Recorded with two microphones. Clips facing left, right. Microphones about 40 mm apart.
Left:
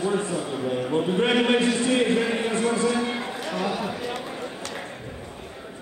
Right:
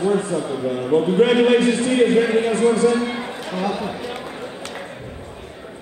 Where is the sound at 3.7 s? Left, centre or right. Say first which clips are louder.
Right 3 dB; centre.